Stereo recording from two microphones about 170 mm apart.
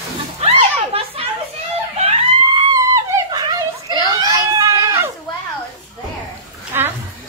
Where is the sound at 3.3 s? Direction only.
25° right (ahead or behind).